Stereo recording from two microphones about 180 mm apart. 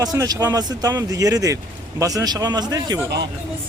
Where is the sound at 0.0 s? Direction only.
20° right (ahead or behind).